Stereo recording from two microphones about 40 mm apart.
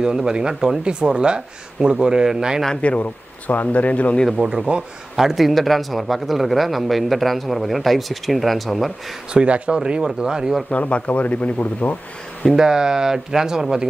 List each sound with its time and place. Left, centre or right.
0.0 s speech: centre
2.8 s speech: left
4.4 s speech: right
5.1 s speech: centre
9.3 s speech: right
10.0 s speech: centre
10.7 s speech: left
12.5 s speech: centre